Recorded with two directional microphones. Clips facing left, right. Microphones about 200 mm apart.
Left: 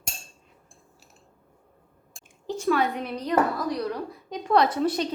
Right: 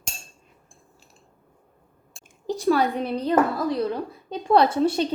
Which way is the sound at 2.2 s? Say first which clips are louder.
Right 4 dB; 35° right (ahead or behind).